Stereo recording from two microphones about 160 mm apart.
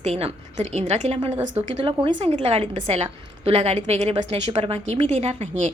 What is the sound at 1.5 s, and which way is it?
A woman's voice, 45° right (ahead or behind).